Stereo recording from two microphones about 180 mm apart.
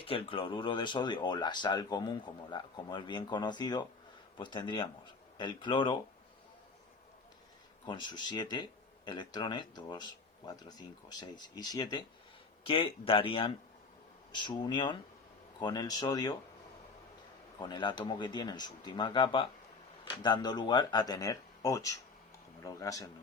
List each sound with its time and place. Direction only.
0.0 s speech: 30° left (ahead or behind)
7.9 s speech: 25° left (ahead or behind)
17.6 s speech: 25° left (ahead or behind)